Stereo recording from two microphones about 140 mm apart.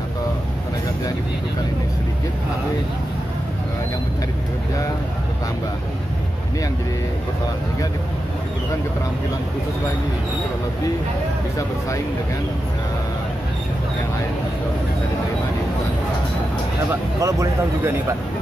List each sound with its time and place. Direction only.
17.2 s speech: 20° right (ahead or behind)